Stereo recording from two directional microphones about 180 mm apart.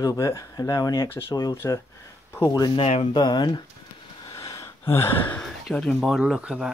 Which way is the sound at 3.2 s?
25° left (ahead or behind).